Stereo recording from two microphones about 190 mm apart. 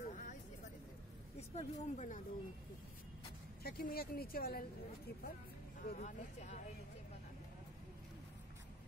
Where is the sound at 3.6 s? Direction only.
55° left (ahead or behind).